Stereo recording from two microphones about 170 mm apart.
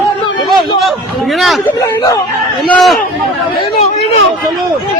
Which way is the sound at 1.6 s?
20° left (ahead or behind).